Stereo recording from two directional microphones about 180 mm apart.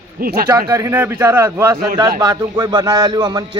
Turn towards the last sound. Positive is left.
turn(degrees=-25)  # may be behind; listen again after turning